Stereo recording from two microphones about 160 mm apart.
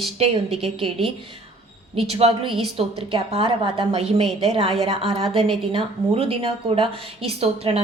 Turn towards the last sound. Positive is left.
turn(degrees=-40)  # may be behind; listen again after turning